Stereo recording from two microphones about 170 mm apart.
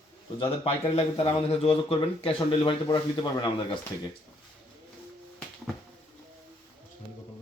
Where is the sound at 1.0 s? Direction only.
35° left (ahead or behind).